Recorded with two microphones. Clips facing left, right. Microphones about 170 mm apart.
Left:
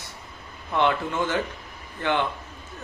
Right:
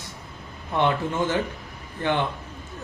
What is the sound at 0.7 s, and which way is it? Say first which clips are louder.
Speech: even; 15° right (ahead or behind).